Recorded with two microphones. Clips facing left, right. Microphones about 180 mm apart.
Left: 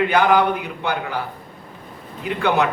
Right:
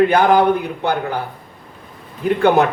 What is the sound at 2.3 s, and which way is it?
Speech, 45° right (ahead or behind).